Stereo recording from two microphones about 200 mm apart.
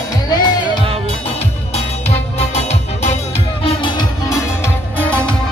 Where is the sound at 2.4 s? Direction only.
30° left (ahead or behind).